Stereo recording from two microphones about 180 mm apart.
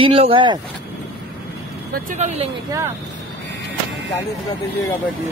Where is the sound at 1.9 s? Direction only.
45° right (ahead or behind).